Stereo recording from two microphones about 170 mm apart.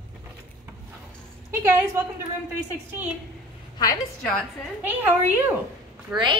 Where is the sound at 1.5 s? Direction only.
15° right (ahead or behind).